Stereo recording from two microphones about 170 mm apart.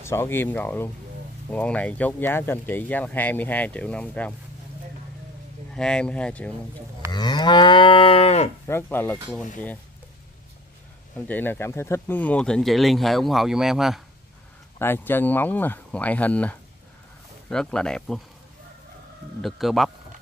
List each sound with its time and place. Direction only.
0.0 s speech: 15° left (ahead or behind)
5.8 s speech: 5° left (ahead or behind)
7.1 s moo: 25° left (ahead or behind)
8.6 s speech: 15° left (ahead or behind)
11.1 s speech: 10° left (ahead or behind)
14.8 s speech: 10° left (ahead or behind)
19.4 s speech: centre (ahead or behind)